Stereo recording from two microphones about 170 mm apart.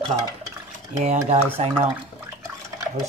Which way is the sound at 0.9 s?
45° right (ahead or behind).